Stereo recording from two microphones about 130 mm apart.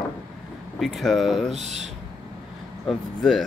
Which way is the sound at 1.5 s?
60° right (ahead or behind).